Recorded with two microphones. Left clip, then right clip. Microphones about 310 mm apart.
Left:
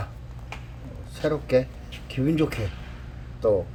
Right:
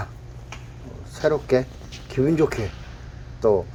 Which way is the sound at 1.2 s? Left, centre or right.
Centre.